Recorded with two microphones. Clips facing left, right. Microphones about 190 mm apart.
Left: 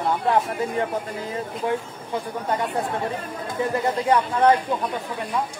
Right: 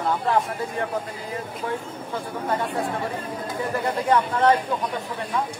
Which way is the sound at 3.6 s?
20° left (ahead or behind).